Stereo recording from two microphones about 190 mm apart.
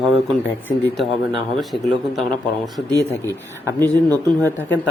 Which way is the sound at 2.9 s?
20° right (ahead or behind).